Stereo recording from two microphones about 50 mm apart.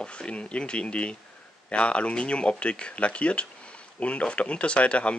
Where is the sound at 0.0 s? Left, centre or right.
Left.